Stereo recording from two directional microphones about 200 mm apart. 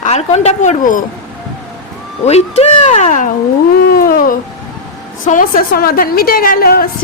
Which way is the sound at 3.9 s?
45° left (ahead or behind).